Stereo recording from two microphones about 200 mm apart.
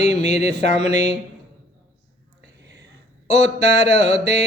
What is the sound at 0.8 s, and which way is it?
Mantra, 55° right (ahead or behind).